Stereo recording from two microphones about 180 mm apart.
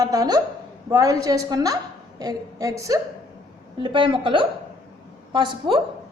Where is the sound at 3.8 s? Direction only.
30° right (ahead or behind).